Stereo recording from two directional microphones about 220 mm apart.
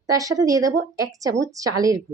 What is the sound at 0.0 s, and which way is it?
A woman's voice, 15° right (ahead or behind).